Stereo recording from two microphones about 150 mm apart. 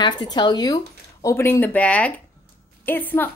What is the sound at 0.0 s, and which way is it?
Speech, 30° left (ahead or behind).